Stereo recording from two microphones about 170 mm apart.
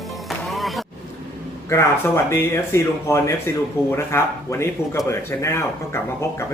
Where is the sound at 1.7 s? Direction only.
15° left (ahead or behind).